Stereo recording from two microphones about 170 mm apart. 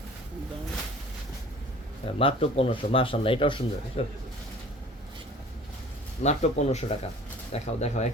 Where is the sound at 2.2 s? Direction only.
35° left (ahead or behind).